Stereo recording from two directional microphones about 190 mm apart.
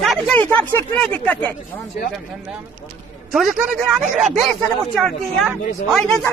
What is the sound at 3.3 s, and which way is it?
Speech, centre (ahead or behind).